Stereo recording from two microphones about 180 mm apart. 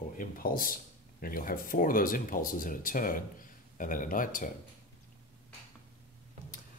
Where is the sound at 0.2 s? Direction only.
50° left (ahead or behind).